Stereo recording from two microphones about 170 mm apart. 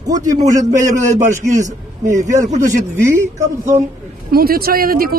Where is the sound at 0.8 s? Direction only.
20° right (ahead or behind).